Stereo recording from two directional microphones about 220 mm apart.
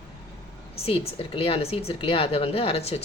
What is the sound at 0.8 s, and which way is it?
Speech, 25° left (ahead or behind).